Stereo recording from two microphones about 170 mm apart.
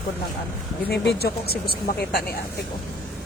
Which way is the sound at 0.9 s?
70° left (ahead or behind).